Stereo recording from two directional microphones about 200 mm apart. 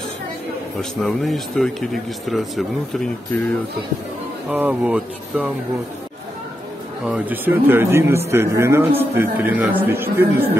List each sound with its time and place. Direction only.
0.7 s speech: centre (ahead or behind)
7.1 s speech: 5° right (ahead or behind)